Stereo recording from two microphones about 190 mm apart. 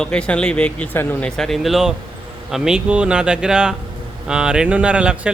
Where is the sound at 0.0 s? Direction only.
5° left (ahead or behind).